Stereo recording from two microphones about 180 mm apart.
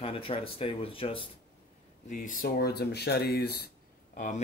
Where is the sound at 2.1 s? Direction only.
50° left (ahead or behind).